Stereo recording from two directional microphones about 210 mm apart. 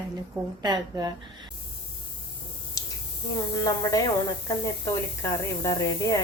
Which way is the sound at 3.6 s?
15° left (ahead or behind).